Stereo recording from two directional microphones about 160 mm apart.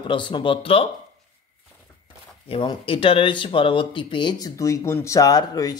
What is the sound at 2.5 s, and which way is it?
Speech, 35° left (ahead or behind).